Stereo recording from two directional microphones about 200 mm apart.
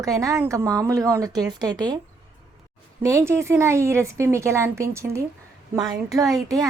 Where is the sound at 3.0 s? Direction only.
15° right (ahead or behind).